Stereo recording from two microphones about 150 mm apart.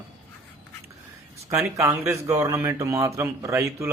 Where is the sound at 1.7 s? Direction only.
20° right (ahead or behind).